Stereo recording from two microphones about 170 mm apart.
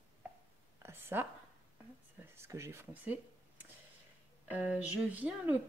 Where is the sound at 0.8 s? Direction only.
15° right (ahead or behind).